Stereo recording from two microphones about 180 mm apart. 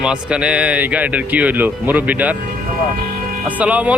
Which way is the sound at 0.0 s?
5° right (ahead or behind).